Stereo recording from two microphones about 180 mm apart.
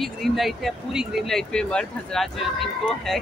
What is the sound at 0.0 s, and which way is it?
Speech, centre (ahead or behind).